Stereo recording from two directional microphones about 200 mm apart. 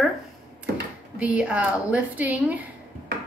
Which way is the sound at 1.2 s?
5° right (ahead or behind).